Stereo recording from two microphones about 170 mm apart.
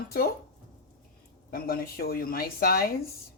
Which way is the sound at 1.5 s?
60° left (ahead or behind).